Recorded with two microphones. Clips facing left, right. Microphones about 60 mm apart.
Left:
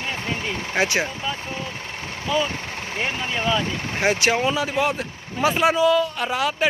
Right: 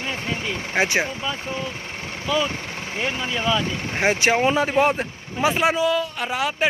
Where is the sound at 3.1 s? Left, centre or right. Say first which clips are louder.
Right 1 dB; centre.